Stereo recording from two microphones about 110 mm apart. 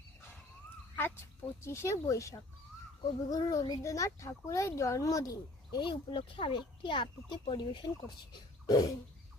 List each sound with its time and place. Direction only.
0.9 s a child's voice: 20° left (ahead or behind); by 8.9 s 35° left (ahead or behind)